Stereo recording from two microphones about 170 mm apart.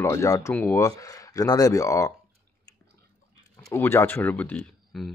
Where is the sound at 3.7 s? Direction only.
15° left (ahead or behind).